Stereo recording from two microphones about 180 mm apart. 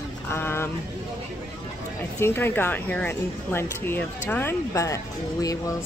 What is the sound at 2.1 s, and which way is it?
Speech, 15° left (ahead or behind).